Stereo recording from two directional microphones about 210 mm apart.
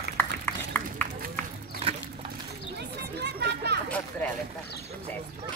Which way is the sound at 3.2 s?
50° right (ahead or behind).